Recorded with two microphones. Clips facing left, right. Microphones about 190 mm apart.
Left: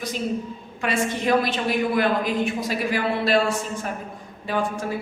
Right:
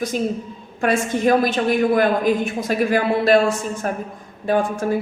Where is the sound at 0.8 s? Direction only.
45° right (ahead or behind).